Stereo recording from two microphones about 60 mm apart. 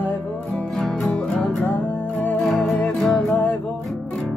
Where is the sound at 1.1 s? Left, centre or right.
Centre.